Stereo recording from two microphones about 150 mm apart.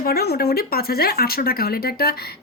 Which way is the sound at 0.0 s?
90° left.